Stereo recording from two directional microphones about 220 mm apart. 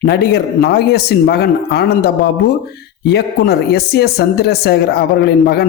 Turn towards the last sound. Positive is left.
turn(degrees=45)  # may be behind; listen again after turning